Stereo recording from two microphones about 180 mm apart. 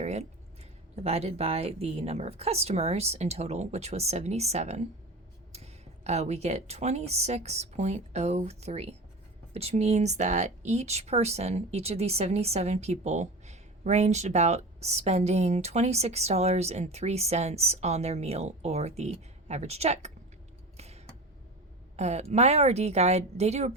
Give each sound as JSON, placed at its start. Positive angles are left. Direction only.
{"t": 0.0, "sound": "speech", "side_deg": -35}
{"t": 20.7, "sound": "a sound", "side_deg": -35}
{"t": 21.9, "sound": "speech", "side_deg": -35}